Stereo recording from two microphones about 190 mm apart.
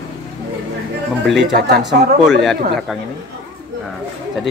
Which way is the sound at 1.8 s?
Centre (ahead or behind).